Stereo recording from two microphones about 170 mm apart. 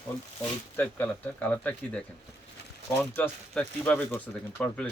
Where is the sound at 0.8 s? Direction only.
10° left (ahead or behind).